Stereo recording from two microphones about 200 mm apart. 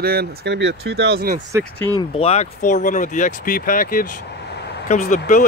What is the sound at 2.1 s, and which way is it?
Speech, 30° left (ahead or behind).